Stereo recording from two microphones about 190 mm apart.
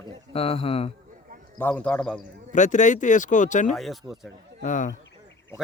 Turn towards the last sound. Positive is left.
turn(degrees=40)  # may be behind; listen again after turning